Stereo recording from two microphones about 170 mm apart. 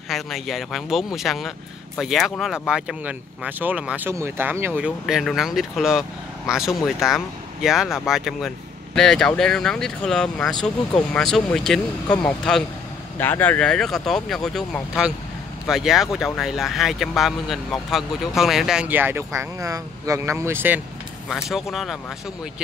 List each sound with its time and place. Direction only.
0.1 s speech: centre (ahead or behind)
21.5 s speech: centre (ahead or behind)